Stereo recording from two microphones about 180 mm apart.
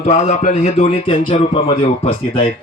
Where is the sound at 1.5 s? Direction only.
35° left (ahead or behind).